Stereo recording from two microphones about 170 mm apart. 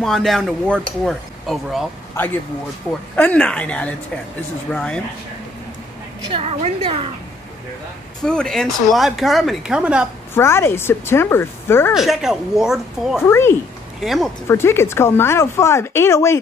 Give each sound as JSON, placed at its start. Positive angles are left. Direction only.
{"t": 0.0, "sound": "speech", "side_deg": 0}
{"t": 2.2, "sound": "speech", "side_deg": 15}
{"t": 6.2, "sound": "a woman's voice", "side_deg": -35}
{"t": 8.2, "sound": "speech", "side_deg": 5}
{"t": 10.3, "sound": "speech", "side_deg": 15}
{"t": 11.9, "sound": "speech", "side_deg": 0}
{"t": 13.2, "sound": "speech", "side_deg": 15}
{"t": 14.0, "sound": "speech", "side_deg": 0}
{"t": 14.5, "sound": "speech", "side_deg": 15}